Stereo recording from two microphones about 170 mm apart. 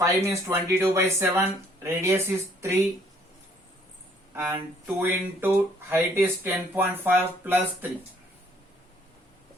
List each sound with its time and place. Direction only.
0.0 s speech: 15° right (ahead or behind)
4.4 s speech: 15° right (ahead or behind)